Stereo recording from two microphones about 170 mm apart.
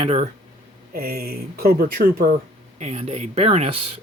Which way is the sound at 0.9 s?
60° right (ahead or behind).